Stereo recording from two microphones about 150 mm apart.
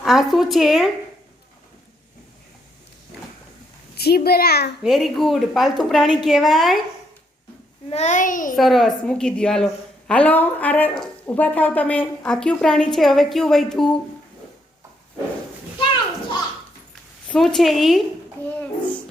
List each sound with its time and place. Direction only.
0.0 s a woman's voice: centre (ahead or behind)
3.9 s a child's voice: 90° left
4.8 s a woman's voice: centre (ahead or behind)
7.9 s a child's voice: 50° left (ahead or behind)
8.5 s a woman's voice: centre (ahead or behind)
15.8 s children playing: 35° left (ahead or behind)
17.2 s a woman's voice: 5° left (ahead or behind)